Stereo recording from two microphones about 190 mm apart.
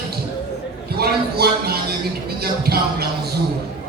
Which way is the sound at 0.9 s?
55° right (ahead or behind).